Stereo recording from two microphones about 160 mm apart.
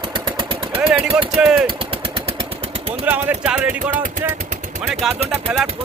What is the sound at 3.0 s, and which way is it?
Speech, 10° right (ahead or behind).